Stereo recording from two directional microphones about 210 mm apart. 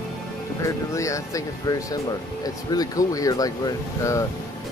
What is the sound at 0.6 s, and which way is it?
Speech, 15° left (ahead or behind).